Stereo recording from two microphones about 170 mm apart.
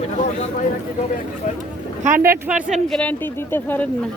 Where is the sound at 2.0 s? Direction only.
55° right (ahead or behind).